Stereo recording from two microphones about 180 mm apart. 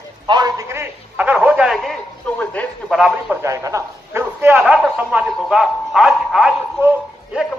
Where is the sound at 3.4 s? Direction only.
15° right (ahead or behind).